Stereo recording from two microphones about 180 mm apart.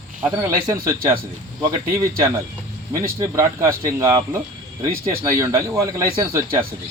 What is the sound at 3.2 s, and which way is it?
Speech, 15° right (ahead or behind).